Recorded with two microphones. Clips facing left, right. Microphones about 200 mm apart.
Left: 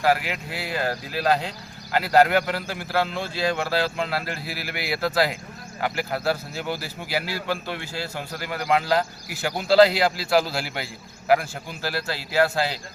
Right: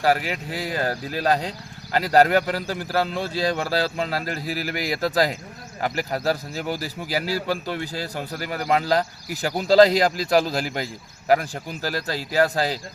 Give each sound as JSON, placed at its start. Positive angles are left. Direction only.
{"t": 0.1, "sound": "speech", "side_deg": -40}